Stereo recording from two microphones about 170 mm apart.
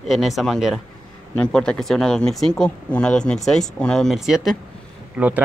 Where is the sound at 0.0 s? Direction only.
Centre (ahead or behind).